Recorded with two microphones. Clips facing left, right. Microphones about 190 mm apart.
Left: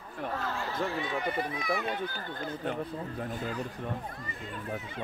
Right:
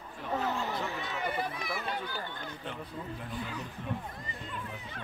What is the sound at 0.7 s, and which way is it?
Speech, 55° left (ahead or behind).